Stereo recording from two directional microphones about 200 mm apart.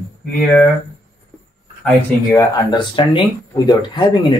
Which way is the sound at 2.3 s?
20° left (ahead or behind).